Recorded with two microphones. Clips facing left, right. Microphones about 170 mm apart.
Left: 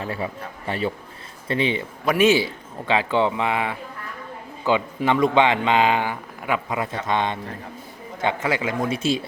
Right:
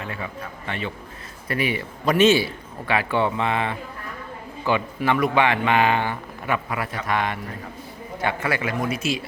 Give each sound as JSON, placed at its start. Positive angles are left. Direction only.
{"t": 0.0, "sound": "speech", "side_deg": 30}
{"t": 1.5, "sound": "speech", "side_deg": 25}
{"t": 2.0, "sound": "speech", "side_deg": 10}